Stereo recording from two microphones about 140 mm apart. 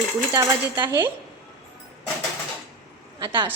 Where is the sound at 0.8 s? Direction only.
15° right (ahead or behind).